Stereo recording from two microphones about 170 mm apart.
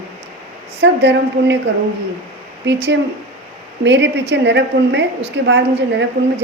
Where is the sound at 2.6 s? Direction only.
90° right.